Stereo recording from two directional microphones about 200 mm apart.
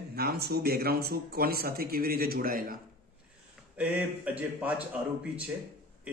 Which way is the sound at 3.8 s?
5° right (ahead or behind).